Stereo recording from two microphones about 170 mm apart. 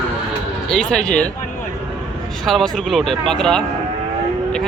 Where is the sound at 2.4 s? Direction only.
Centre (ahead or behind).